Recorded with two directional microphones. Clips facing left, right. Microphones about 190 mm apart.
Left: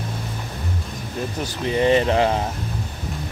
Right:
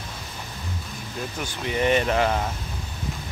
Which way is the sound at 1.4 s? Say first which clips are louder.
Left 4 dB; 30° left (ahead or behind).